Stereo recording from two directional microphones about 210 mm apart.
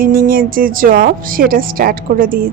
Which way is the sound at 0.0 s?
45° right (ahead or behind).